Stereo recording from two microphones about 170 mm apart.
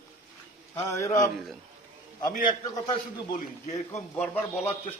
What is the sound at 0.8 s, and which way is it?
Speech, 15° left (ahead or behind).